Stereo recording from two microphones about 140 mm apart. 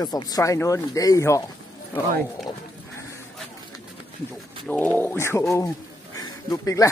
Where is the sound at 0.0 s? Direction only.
30° left (ahead or behind).